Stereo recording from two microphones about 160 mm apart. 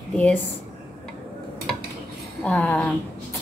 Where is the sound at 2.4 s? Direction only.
10° left (ahead or behind).